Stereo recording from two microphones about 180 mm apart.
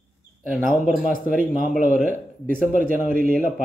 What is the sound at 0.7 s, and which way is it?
Speech, 5° right (ahead or behind).